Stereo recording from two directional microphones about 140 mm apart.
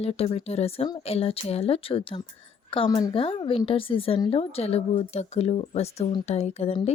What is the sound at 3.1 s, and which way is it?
Speech, 40° left (ahead or behind).